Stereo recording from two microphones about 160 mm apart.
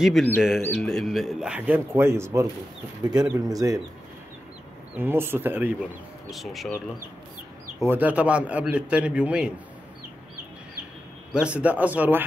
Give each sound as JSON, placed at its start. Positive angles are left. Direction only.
{"t": 0.2, "sound": "speech", "side_deg": 0}
{"t": 0.6, "sound": "speech", "side_deg": 10}
{"t": 0.8, "sound": "a man's voice", "side_deg": 0}
{"t": 4.9, "sound": "a man's voice", "side_deg": -15}
{"t": 6.3, "sound": "speech", "side_deg": 0}
{"t": 7.8, "sound": "a man's voice", "side_deg": -10}
{"t": 11.3, "sound": "a man's voice", "side_deg": -10}